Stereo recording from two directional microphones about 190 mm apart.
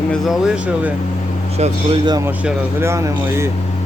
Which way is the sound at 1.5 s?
35° right (ahead or behind).